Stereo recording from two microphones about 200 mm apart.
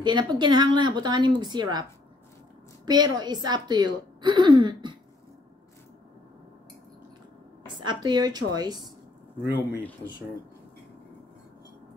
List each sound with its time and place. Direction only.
0.0 s a woman's voice: 20° right (ahead or behind)
7.8 s a woman's voice: 20° right (ahead or behind)